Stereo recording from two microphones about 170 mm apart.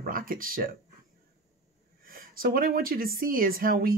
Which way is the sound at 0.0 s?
55° right (ahead or behind).